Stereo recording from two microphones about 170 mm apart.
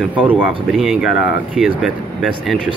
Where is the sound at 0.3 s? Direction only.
5° right (ahead or behind).